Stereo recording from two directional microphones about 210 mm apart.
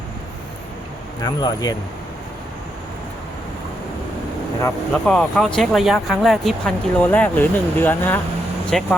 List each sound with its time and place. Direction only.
1.2 s speech: 20° left (ahead or behind)
5.0 s speech: centre (ahead or behind)